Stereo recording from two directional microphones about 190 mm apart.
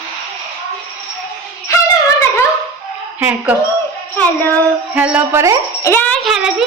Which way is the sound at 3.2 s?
10° right (ahead or behind).